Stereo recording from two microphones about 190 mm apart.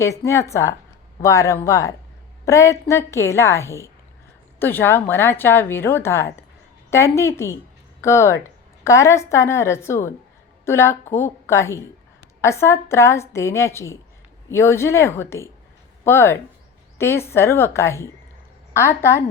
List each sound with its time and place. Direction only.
0.0 s a woman's voice: 15° left (ahead or behind)